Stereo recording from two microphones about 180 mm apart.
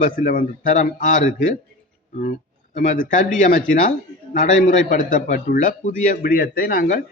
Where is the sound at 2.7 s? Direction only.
45° left (ahead or behind).